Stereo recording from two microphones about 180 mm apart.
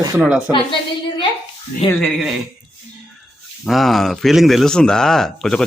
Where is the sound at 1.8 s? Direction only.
30° left (ahead or behind).